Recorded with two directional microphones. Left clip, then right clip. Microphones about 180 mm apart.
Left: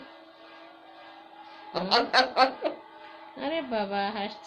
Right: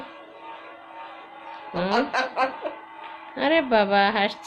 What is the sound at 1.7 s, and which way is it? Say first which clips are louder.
Speech: even; 40° left (ahead or behind).